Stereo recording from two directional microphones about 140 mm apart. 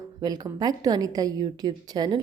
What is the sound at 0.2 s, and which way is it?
A woman's voice, 30° right (ahead or behind).